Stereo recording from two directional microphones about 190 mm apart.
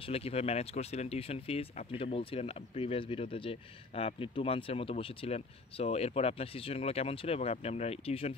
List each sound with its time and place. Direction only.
0.0 s speech: 30° left (ahead or behind)